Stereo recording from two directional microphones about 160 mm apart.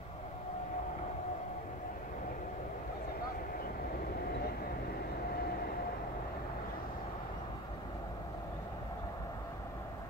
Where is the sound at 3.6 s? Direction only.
70° left (ahead or behind).